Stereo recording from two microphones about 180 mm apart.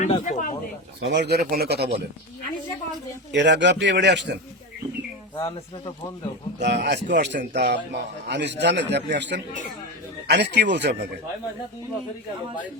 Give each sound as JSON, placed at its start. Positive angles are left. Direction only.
{"t": 0.0, "sound": "speech", "side_deg": 45}
{"t": 1.1, "sound": "a man's voice", "side_deg": -75}
{"t": 1.5, "sound": "speech", "side_deg": -60}
{"t": 3.3, "sound": "a man's voice", "side_deg": -75}
{"t": 5.4, "sound": "speech", "side_deg": 25}
{"t": 6.6, "sound": "a man's voice", "side_deg": -70}